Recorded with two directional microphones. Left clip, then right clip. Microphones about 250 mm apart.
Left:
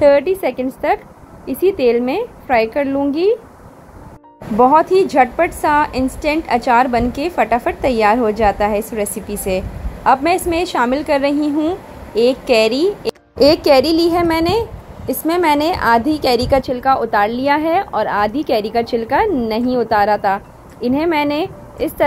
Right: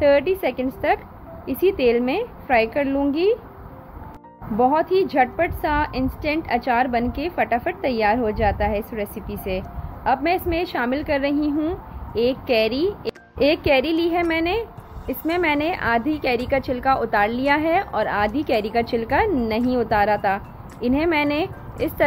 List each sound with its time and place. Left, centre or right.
0.0 s a woman's voice: centre
4.6 s a woman's voice: centre
12.1 s speech: centre
13.4 s a woman's voice: centre